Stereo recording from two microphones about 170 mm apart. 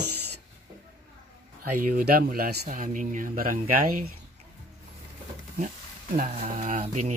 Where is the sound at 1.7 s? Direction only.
60° right (ahead or behind).